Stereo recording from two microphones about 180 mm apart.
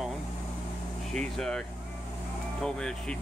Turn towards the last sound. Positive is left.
turn(degrees=5)  # may be behind; listen again after turning